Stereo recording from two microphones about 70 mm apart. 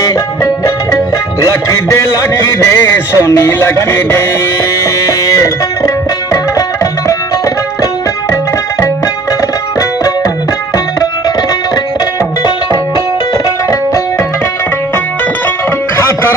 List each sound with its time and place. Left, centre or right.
0.0 s music: left
4.8 s music: left
11.0 s music: left
16.0 s music: left